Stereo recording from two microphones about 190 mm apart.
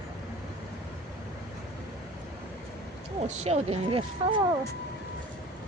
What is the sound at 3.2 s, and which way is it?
Speech, 35° right (ahead or behind).